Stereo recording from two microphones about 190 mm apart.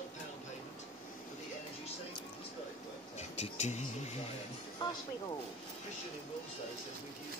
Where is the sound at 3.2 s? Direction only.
35° left (ahead or behind).